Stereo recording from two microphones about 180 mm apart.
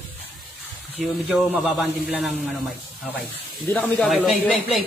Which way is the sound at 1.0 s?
5° right (ahead or behind).